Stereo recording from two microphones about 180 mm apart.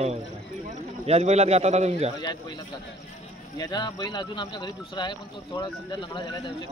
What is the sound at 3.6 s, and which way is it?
Speech, 25° left (ahead or behind).